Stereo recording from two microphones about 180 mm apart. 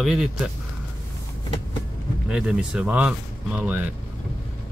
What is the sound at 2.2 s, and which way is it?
Speech, 5° right (ahead or behind).